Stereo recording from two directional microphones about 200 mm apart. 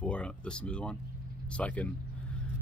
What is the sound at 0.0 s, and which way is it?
Speech, 5° left (ahead or behind).